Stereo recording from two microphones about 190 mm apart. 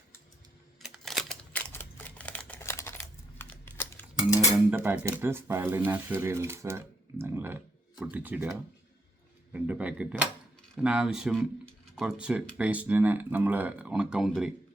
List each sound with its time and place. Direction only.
0.8 s typing: centre (ahead or behind)
4.4 s speech: 10° right (ahead or behind)